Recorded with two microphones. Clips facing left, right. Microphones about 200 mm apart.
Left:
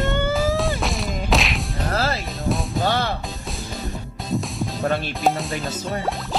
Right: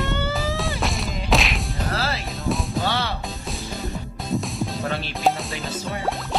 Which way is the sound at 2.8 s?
50° left (ahead or behind).